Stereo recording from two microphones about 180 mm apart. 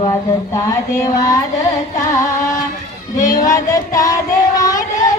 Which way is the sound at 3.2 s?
45° left (ahead or behind).